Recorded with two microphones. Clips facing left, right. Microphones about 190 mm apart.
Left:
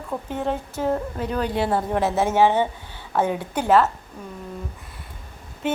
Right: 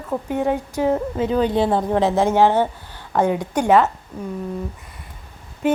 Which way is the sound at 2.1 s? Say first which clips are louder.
Right 1 dB; 15° right (ahead or behind).